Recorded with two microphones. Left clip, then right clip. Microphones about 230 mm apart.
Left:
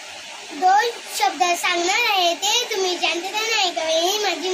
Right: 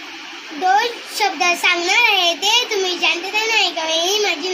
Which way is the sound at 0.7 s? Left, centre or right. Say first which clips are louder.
Right 2 dB; centre.